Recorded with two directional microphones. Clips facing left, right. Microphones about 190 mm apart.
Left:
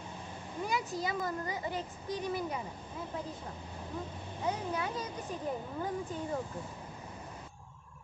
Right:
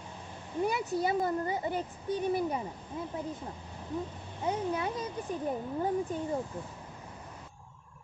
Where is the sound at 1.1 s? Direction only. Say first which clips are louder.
Right 6 dB; 30° right (ahead or behind).